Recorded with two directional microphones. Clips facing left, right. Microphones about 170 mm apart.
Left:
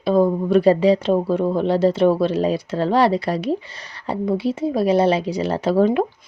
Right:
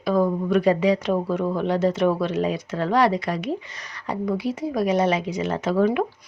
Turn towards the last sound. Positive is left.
turn(degrees=30)  # may be behind; listen again after turning